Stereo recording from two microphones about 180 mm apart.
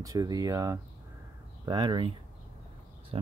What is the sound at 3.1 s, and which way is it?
Speech, 30° right (ahead or behind).